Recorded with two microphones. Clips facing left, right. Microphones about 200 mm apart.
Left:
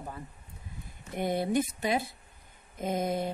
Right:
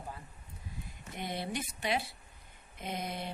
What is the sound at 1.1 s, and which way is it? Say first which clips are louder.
Speech: left 10 dB; 50° left (ahead or behind).